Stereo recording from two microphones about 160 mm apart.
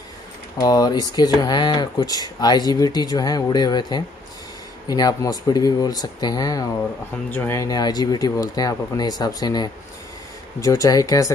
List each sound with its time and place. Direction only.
0.6 s speech: 25° left (ahead or behind)